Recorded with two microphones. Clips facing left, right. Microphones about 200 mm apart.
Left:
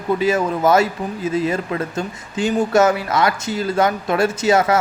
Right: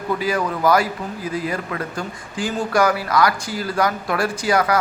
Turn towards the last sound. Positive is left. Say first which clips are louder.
# left 3 dB
turn(degrees=25)  # may be behind; listen again after turning